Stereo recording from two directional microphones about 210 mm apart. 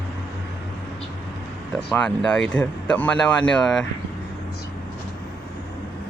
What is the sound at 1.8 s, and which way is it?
Speech, 5° left (ahead or behind).